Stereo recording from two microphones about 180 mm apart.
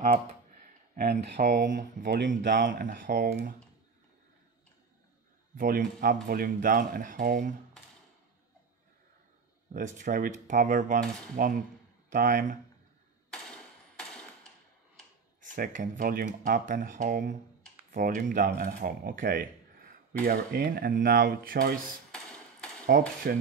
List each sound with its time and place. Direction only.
0.9 s speech: 55° right (ahead or behind)
2.0 s speech: 75° right (ahead or behind)
2.6 s speech: 50° right (ahead or behind)
5.6 s speech: 50° right (ahead or behind)
9.8 s speech: 45° right (ahead or behind)
13.3 s a sound: 5° left (ahead or behind)
15.4 s speech: 45° right (ahead or behind)
22.8 s speech: 55° right (ahead or behind)